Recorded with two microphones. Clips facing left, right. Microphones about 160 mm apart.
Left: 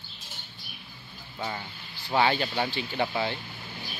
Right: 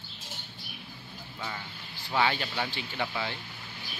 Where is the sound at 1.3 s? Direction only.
35° left (ahead or behind).